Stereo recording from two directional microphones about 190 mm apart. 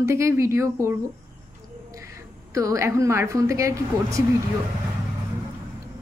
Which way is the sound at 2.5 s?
15° right (ahead or behind).